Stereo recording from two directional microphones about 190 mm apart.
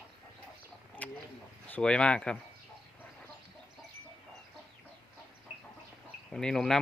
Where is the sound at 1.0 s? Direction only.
10° left (ahead or behind).